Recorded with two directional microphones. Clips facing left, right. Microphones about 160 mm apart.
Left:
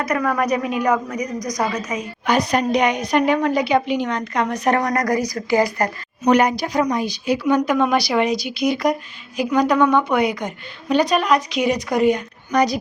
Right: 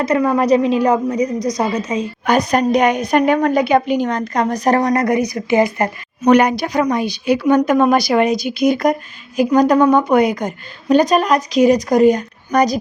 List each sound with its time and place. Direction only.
0.0 s a woman's voice: 25° right (ahead or behind)
2.2 s a woman's voice: 50° right (ahead or behind)
4.8 s a woman's voice: 25° right (ahead or behind)
6.2 s a woman's voice: 65° right (ahead or behind); by 12.8 s 45° right (ahead or behind)